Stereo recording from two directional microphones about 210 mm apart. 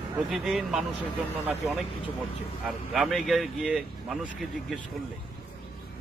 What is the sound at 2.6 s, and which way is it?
Speech, centre (ahead or behind).